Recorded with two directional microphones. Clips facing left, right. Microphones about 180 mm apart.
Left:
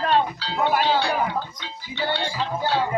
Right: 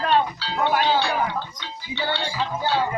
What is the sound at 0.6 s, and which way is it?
Speech, 5° left (ahead or behind).